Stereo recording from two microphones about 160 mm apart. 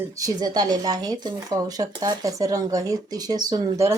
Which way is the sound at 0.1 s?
20° right (ahead or behind).